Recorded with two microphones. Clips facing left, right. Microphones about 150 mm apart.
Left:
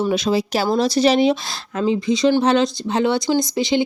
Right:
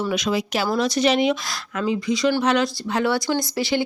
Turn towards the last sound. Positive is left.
turn(degrees=20)  # may be behind; listen again after turning